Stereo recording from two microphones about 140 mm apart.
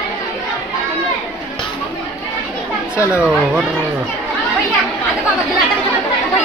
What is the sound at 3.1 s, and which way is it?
Speech, 10° right (ahead or behind).